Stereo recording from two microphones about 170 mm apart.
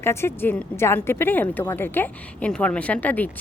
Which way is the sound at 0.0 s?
15° left (ahead or behind).